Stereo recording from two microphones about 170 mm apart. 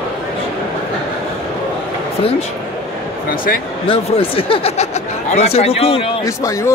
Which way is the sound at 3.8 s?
35° left (ahead or behind).